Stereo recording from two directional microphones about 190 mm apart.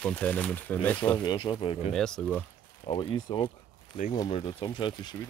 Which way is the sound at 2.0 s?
5° left (ahead or behind).